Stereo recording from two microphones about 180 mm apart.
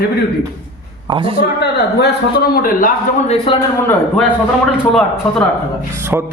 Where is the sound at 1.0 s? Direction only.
30° right (ahead or behind).